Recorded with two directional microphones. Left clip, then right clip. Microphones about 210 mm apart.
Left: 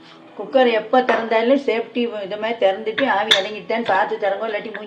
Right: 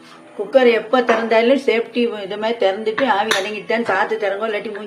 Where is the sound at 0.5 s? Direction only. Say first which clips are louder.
Right 2 dB; 65° right (ahead or behind).